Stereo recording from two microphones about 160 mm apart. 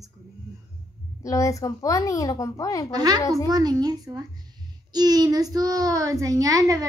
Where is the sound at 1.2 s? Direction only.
20° left (ahead or behind).